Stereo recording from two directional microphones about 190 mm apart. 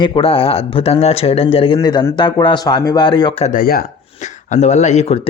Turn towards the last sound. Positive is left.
turn(degrees=35)  # may be behind; listen again after turning